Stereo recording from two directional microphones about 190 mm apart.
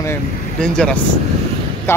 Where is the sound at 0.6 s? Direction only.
5° left (ahead or behind).